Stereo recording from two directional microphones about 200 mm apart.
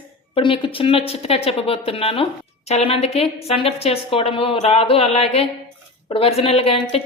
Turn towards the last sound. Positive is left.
turn(degrees=30)  # may be behind; listen again after turning